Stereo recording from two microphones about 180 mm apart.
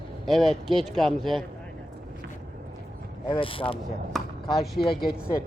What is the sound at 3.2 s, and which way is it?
Speech, 30° left (ahead or behind).